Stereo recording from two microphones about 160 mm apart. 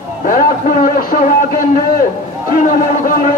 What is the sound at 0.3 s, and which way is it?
Speech, 60° left (ahead or behind).